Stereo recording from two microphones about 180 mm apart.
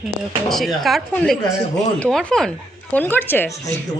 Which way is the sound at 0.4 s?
Centre (ahead or behind).